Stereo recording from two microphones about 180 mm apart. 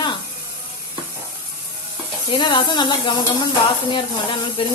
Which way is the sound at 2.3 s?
25° left (ahead or behind).